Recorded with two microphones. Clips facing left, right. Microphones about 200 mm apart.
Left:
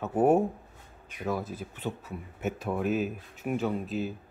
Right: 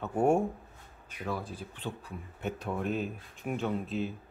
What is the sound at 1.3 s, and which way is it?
Speech, 45° left (ahead or behind).